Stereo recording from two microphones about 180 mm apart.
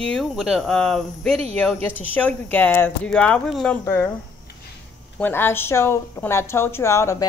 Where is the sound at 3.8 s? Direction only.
15° left (ahead or behind).